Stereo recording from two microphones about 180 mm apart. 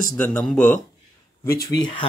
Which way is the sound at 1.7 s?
25° left (ahead or behind).